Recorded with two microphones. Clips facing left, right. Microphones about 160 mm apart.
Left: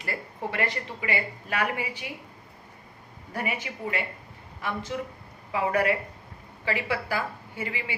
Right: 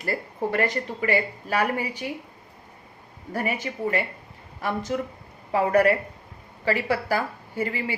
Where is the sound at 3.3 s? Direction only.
45° right (ahead or behind).